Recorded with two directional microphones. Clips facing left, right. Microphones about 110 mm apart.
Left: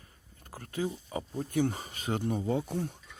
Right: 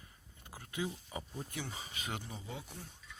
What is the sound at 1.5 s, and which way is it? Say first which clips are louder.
Speech: left 14 dB; 50° left (ahead or behind).